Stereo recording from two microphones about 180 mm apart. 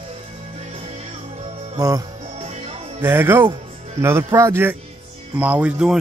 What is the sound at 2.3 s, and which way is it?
Music, 35° right (ahead or behind).